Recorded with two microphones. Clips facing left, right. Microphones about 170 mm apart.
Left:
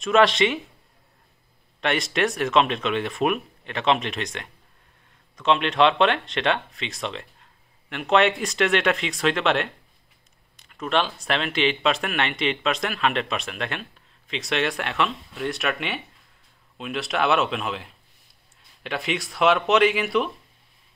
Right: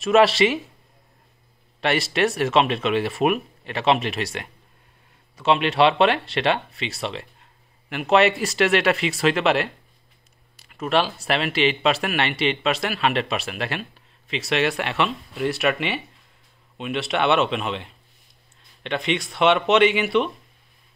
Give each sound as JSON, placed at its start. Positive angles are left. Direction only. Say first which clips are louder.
{"t": 0.0, "sound": "speech", "louder": "right 2 dB", "side_deg": -5}
{"t": 1.8, "sound": "speech", "louder": "right 2 dB", "side_deg": -5}